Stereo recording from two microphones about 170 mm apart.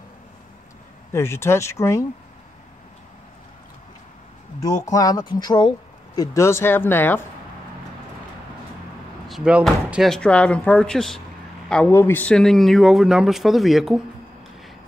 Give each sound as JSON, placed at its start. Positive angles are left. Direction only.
{"t": 1.1, "sound": "speech", "side_deg": 15}
{"t": 4.6, "sound": "speech", "side_deg": 20}
{"t": 9.3, "sound": "speech", "side_deg": -5}